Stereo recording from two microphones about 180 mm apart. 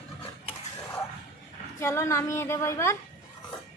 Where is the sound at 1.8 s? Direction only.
15° left (ahead or behind).